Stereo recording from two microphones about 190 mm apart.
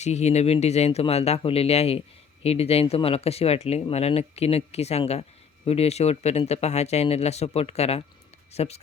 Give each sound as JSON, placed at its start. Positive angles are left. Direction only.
{"t": 0.0, "sound": "speech", "side_deg": 35}